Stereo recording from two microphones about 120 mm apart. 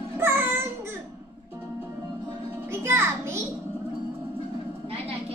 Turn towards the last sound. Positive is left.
turn(degrees=-20)  # may be behind; listen again after turning